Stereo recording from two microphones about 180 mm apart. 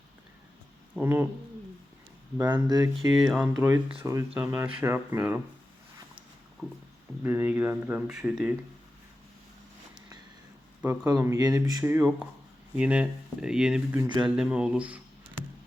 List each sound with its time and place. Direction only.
1.0 s speech: 10° right (ahead or behind)
2.4 s speech: 20° right (ahead or behind)
3.2 s speech: centre (ahead or behind)
3.5 s speech: 15° right (ahead or behind)
7.3 s speech: 10° right (ahead or behind)
10.8 s speech: 15° right (ahead or behind)